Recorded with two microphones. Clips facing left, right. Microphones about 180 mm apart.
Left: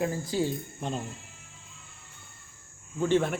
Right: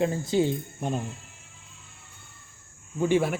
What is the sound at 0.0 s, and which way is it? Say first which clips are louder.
Speech: right 4 dB; 25° right (ahead or behind).